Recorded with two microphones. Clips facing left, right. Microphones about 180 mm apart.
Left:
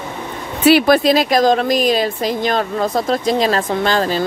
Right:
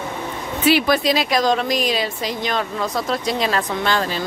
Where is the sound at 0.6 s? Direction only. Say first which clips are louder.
Left 6 dB; 60° left (ahead or behind); by 4.2 s 40° left (ahead or behind).